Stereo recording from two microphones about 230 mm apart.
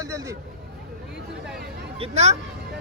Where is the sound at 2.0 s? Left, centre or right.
Right.